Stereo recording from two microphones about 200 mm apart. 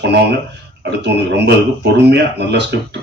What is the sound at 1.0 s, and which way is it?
Speech, 55° right (ahead or behind).